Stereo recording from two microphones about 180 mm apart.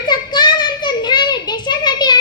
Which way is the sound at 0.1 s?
25° left (ahead or behind).